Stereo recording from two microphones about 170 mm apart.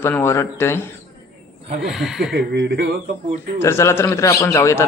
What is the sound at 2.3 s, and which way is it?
Speech, 85° right.